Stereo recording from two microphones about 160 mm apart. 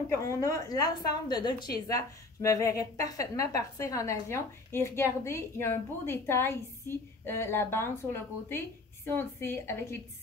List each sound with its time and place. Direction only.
0.2 s a woman's voice: 20° left (ahead or behind)